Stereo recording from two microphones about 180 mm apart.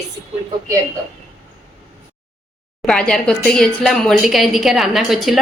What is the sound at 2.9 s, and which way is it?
A woman's voice, 5° left (ahead or behind).